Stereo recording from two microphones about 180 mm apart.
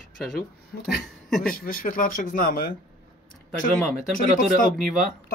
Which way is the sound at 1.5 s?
50° left (ahead or behind).